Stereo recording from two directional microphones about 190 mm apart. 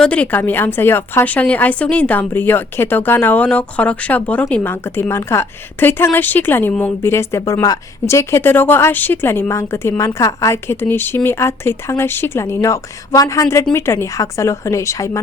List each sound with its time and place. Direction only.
0.0 s a woman's voice: 5° left (ahead or behind)